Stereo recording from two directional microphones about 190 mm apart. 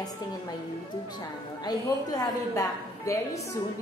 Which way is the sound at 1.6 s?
20° left (ahead or behind).